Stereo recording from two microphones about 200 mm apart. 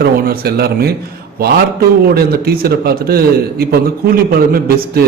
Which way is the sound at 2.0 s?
50° right (ahead or behind).